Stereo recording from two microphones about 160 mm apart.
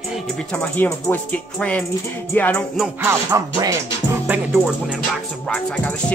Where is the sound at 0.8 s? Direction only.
10° left (ahead or behind).